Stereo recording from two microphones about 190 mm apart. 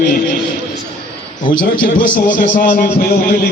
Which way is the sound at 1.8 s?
45° left (ahead or behind).